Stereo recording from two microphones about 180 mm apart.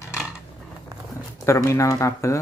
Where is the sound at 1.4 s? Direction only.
15° left (ahead or behind).